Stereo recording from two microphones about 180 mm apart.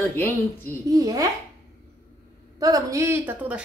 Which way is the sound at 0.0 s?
10° left (ahead or behind).